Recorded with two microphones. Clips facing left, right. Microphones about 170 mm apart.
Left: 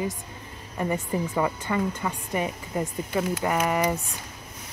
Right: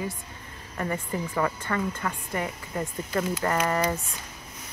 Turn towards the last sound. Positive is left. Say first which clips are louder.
# left 1 dB
turn(degrees=15)  # may be behind; listen again after turning